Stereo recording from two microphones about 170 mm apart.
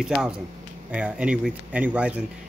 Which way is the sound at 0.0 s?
5° right (ahead or behind).